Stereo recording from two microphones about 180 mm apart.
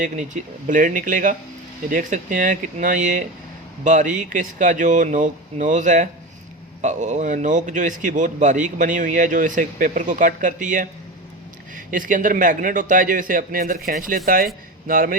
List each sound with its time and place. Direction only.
0.0 s a man's voice: 45° right (ahead or behind)
11.9 s a man's voice: 45° right (ahead or behind)